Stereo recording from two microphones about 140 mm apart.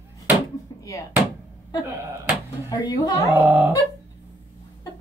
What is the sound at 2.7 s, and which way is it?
Speech, 25° left (ahead or behind).